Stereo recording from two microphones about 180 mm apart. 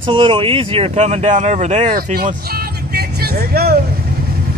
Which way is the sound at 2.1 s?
55° right (ahead or behind).